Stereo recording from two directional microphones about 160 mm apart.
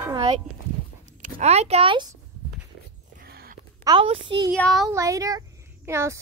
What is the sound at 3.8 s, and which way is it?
Speech, 35° right (ahead or behind).